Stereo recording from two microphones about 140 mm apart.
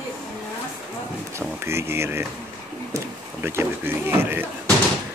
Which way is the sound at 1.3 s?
20° right (ahead or behind).